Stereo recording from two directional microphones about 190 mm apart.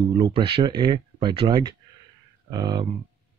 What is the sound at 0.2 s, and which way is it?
Speech, 25° right (ahead or behind).